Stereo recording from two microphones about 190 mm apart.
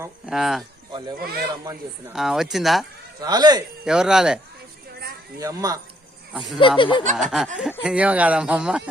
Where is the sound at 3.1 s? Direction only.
20° right (ahead or behind).